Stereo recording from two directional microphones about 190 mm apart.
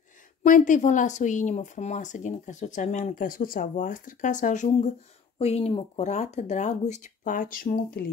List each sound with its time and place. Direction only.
0.4 s speech: 40° left (ahead or behind)